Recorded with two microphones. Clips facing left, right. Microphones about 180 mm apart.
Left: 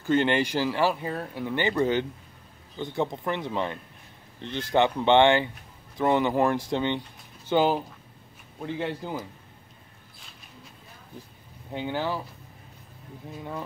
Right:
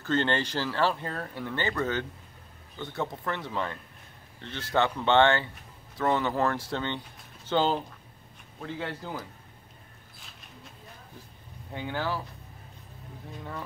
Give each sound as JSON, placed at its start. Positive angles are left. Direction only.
{"t": 0.0, "sound": "speech", "side_deg": 15}
{"t": 11.7, "sound": "speech", "side_deg": 20}